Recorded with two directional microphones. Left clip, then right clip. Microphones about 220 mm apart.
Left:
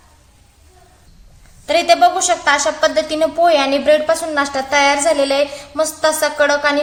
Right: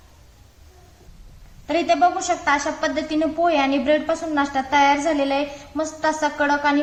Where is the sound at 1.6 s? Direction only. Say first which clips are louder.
Left 6 dB; 45° left (ahead or behind).